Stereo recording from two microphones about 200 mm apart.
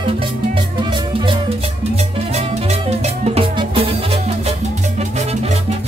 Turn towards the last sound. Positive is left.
turn(degrees=-30)  # may be behind; listen again after turning